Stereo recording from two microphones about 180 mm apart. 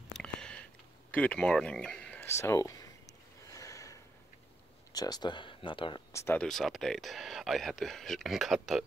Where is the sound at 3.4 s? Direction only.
20° left (ahead or behind).